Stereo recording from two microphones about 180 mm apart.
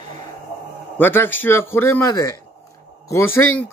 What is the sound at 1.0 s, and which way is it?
Speech, 10° left (ahead or behind).